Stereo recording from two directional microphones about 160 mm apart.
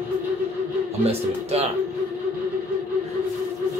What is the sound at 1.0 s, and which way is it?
Speech, 40° right (ahead or behind).